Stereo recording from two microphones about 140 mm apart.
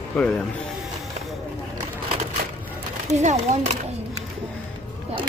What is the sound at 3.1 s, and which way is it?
Speech, 55° right (ahead or behind).